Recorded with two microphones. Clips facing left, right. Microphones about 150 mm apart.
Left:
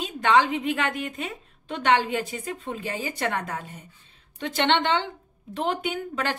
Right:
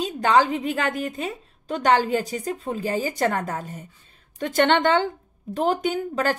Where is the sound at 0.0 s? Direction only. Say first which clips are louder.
Right 2 dB; 40° right (ahead or behind).